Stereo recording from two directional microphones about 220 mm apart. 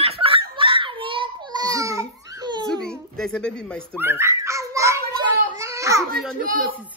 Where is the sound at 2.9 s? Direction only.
5° left (ahead or behind).